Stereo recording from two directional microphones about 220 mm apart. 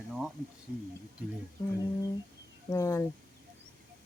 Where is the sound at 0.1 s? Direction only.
Centre (ahead or behind).